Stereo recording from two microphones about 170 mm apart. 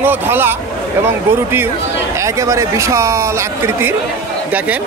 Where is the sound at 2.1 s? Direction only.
20° right (ahead or behind).